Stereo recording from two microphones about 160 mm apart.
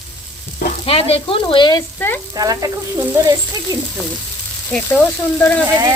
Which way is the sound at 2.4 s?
20° right (ahead or behind).